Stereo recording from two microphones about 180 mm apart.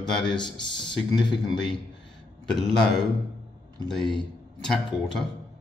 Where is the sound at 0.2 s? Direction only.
25° left (ahead or behind).